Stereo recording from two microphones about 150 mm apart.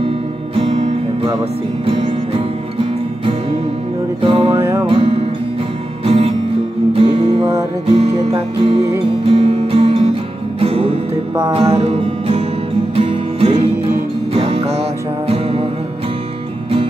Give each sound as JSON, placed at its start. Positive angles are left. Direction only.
{"t": 0.6, "sound": "music", "side_deg": -40}